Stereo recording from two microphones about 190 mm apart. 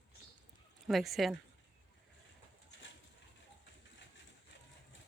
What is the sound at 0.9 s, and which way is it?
Speech, centre (ahead or behind).